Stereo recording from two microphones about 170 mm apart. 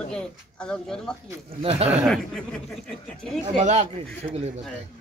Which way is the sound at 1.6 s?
35° right (ahead or behind).